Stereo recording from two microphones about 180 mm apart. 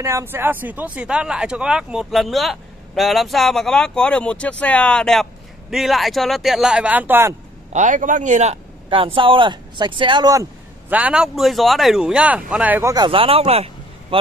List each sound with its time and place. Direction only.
0.0 s speech: 15° right (ahead or behind)
7.7 s speech: 45° right (ahead or behind); by 10.4 s 25° right (ahead or behind)
10.9 s speech: 10° right (ahead or behind)
12.9 s speech: 25° right (ahead or behind)